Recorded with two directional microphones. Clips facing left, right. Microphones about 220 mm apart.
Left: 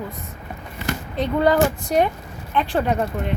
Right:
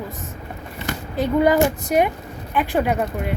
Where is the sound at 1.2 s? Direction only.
10° right (ahead or behind).